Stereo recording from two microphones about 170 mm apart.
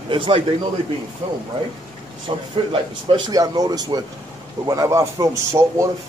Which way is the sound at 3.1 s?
20° right (ahead or behind).